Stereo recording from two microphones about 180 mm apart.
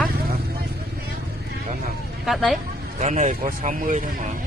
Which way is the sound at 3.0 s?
45° right (ahead or behind).